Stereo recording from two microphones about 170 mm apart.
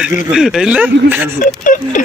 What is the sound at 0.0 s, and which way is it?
A man's voice, 5° right (ahead or behind).